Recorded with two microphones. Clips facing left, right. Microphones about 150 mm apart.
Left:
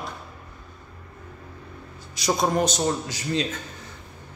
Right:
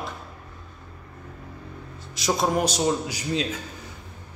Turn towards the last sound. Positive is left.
turn(degrees=-10)  # may be behind; listen again after turning